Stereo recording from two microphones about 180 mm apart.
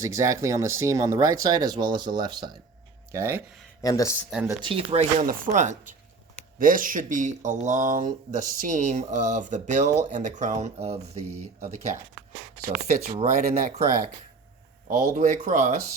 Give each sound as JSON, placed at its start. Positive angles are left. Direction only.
{"t": 0.0, "sound": "speech", "side_deg": -15}
{"t": 3.1, "sound": "speech", "side_deg": -15}
{"t": 3.8, "sound": "speech", "side_deg": 20}
{"t": 4.4, "sound": "speech", "side_deg": -25}
{"t": 5.2, "sound": "speech", "side_deg": -50}
{"t": 13.1, "sound": "speech", "side_deg": -40}